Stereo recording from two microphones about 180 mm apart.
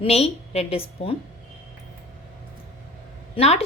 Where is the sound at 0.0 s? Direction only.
35° left (ahead or behind).